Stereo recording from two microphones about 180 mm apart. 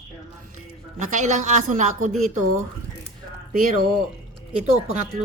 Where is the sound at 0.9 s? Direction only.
45° right (ahead or behind).